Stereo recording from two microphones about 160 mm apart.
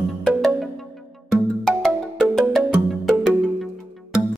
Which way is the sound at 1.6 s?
5° left (ahead or behind).